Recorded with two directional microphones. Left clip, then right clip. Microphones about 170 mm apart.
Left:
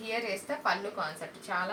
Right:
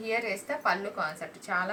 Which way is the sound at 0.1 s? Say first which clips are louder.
Right 3 dB; 5° right (ahead or behind).